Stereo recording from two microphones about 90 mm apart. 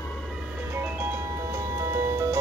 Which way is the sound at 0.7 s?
20° right (ahead or behind).